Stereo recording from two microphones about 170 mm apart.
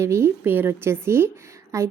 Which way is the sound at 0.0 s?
15° right (ahead or behind).